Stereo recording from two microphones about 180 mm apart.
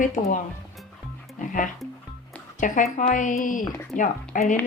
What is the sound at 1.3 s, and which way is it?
Speech, 50° left (ahead or behind).